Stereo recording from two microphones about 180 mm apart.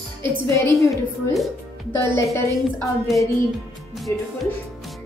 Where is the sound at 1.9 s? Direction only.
15° left (ahead or behind).